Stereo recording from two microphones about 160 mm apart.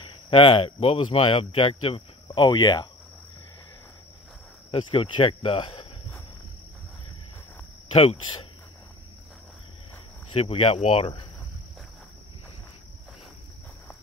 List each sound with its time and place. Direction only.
0.3 s speech: 35° left (ahead or behind)
4.6 s speech: 35° left (ahead or behind)
7.9 s speech: 35° left (ahead or behind)
10.3 s speech: 35° left (ahead or behind)